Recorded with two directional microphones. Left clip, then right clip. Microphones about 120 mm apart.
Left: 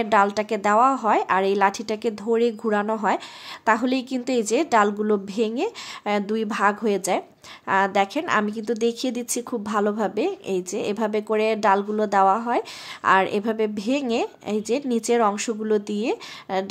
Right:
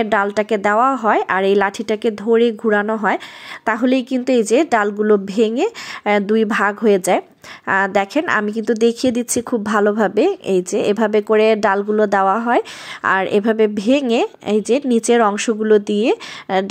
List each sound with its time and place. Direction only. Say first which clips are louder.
0.0 s a woman's voice: right 3 dB; 25° right (ahead or behind)